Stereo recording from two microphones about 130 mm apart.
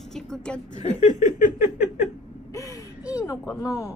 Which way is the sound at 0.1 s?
5° left (ahead or behind).